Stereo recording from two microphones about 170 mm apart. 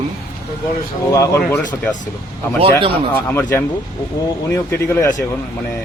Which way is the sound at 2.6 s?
30° right (ahead or behind).